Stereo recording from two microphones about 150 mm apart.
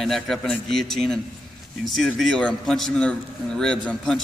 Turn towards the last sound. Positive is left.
turn(degrees=5)  # may be behind; listen again after turning